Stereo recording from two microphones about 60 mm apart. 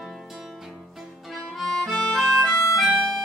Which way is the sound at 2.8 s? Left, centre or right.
Centre.